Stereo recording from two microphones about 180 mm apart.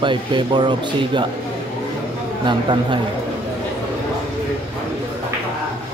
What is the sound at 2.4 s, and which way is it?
Speech, 25° right (ahead or behind).